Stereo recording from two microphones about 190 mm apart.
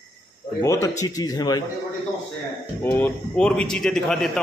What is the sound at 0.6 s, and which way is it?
Speech, 15° left (ahead or behind).